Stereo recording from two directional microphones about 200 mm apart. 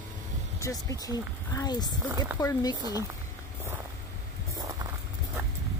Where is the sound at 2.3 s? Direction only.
20° left (ahead or behind).